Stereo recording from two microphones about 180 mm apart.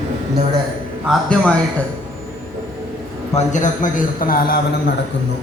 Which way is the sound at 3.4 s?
45° left (ahead or behind).